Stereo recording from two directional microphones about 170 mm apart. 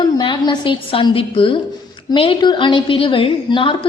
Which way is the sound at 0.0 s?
25° left (ahead or behind).